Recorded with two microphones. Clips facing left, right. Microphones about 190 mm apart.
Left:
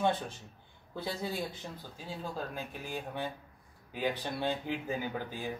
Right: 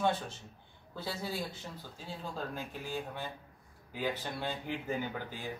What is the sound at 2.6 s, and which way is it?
A man's voice, 15° left (ahead or behind).